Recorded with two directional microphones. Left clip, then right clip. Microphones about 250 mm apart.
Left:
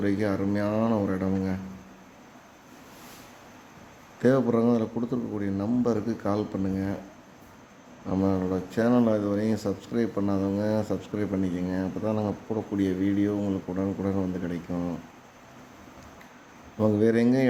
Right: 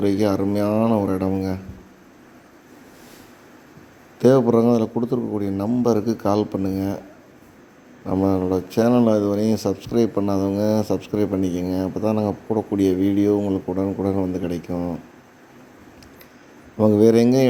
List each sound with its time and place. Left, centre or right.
0.0 s speech: right
4.2 s speech: centre
8.0 s speech: centre
16.7 s speech: centre